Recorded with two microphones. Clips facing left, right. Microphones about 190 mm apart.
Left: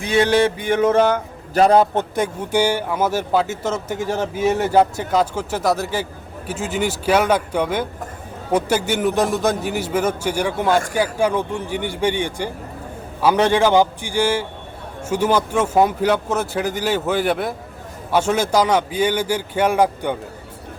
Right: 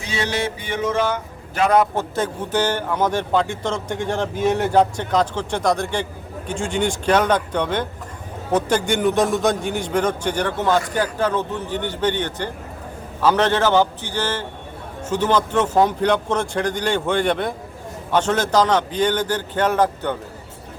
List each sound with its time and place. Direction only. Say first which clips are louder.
0.0 s a sound: left 8 dB; 55° left (ahead or behind)
1.5 s a man's voice: left 3 dB; 35° left (ahead or behind)
2.1 s speech: left 2 dB; 10° left (ahead or behind)